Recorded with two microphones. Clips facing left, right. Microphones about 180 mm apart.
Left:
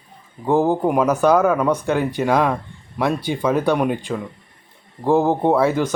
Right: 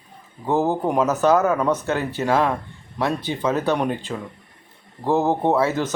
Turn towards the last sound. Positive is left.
turn(degrees=15)  # may be behind; listen again after turning